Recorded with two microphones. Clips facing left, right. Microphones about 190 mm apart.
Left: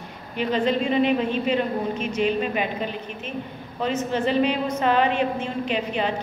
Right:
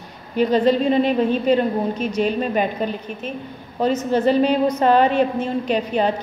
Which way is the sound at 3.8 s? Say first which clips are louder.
Right 6 dB; 40° right (ahead or behind).